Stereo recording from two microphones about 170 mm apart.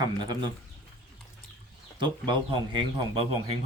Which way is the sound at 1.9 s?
25° right (ahead or behind).